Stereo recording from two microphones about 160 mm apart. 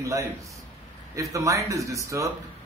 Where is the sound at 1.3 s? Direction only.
20° right (ahead or behind).